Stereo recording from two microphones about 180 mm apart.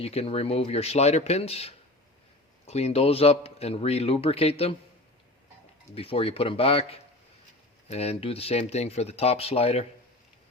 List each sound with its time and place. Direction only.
0.0 s speech: 35° left (ahead or behind)
5.9 s speech: 30° left (ahead or behind)